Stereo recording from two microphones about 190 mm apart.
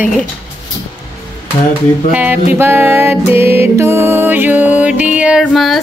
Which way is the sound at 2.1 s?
10° right (ahead or behind).